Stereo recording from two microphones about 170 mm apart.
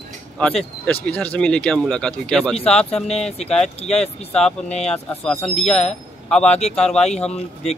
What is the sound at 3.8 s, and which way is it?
Speech, 40° left (ahead or behind).